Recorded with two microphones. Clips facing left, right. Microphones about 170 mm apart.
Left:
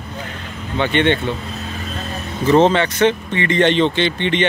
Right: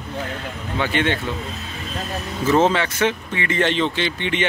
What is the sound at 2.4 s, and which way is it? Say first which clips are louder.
A man's voice: left 4 dB; 5° right (ahead or behind).